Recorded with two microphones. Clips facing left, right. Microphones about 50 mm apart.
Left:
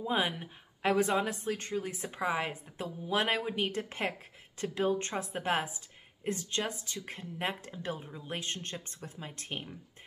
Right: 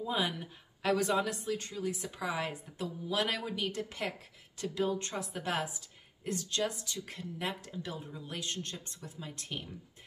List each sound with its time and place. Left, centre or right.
0.0 s a woman's voice: left